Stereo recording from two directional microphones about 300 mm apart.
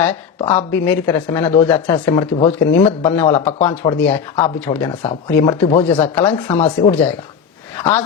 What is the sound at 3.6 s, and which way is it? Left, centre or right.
Speech, centre.